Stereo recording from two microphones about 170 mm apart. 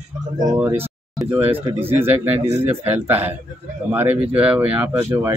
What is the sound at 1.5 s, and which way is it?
Speech, 35° right (ahead or behind).